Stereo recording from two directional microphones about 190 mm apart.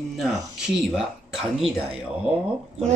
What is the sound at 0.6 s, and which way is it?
Speech, centre (ahead or behind).